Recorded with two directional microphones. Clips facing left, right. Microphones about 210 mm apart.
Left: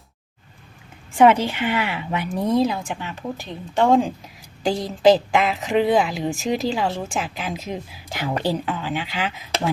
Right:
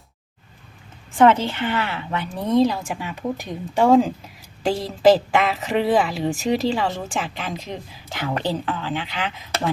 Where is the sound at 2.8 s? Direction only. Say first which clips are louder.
Right 2 dB; 5° right (ahead or behind).